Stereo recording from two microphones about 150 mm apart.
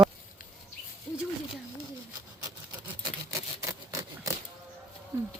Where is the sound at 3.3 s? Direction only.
20° right (ahead or behind).